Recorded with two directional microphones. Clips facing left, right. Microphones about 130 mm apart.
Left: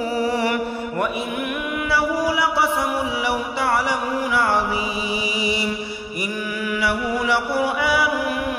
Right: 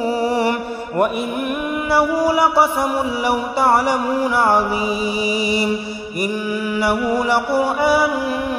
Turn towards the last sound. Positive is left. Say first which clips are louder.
# right 4 dB
turn(degrees=-40)  # may be behind; listen again after turning